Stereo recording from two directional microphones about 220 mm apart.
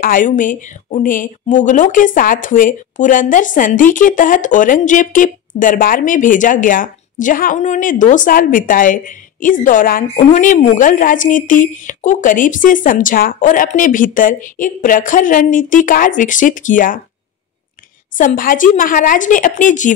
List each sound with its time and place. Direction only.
0.0 s speech: 40° left (ahead or behind)
18.1 s speech: 40° left (ahead or behind)